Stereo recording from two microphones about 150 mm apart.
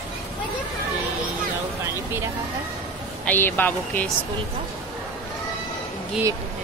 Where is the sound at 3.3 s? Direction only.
15° left (ahead or behind).